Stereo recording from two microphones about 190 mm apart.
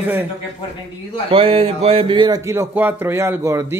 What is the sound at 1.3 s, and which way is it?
Speech, 30° right (ahead or behind).